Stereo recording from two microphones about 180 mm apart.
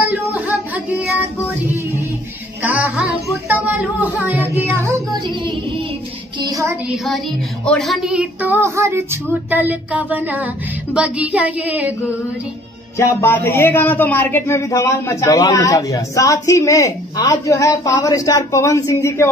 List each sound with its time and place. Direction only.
0.5 s child singing: 10° right (ahead or behind)
2.6 s child singing: 10° right (ahead or behind)
5.2 s music: 25° right (ahead or behind)
6.4 s child singing: 20° right (ahead or behind)
7.6 s speech: centre (ahead or behind)
12.9 s a man's voice: 15° left (ahead or behind)